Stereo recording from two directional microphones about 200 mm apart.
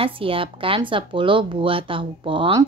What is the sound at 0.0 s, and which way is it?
Speech, 25° right (ahead or behind).